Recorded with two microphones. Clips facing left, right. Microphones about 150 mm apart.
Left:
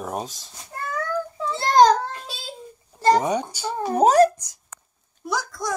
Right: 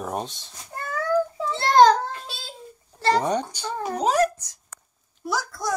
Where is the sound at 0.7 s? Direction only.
Centre (ahead or behind).